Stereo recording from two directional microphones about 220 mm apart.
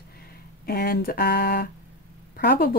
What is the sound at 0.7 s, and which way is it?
Speech, 45° left (ahead or behind).